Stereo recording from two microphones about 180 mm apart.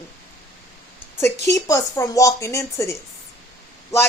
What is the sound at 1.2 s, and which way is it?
Speech, 15° left (ahead or behind).